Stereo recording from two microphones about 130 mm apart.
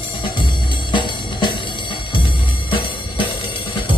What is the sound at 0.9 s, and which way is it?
Music, 40° left (ahead or behind).